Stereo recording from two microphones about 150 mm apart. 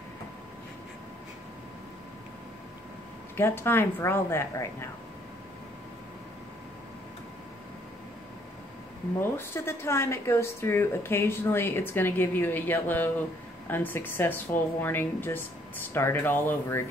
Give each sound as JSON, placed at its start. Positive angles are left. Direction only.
{"t": 3.3, "sound": "speech", "side_deg": 15}
{"t": 9.2, "sound": "speech", "side_deg": 15}